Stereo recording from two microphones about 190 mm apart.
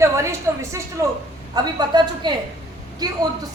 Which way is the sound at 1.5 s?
20° right (ahead or behind).